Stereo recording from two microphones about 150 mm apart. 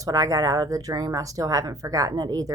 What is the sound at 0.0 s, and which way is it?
A woman's voice, 20° right (ahead or behind).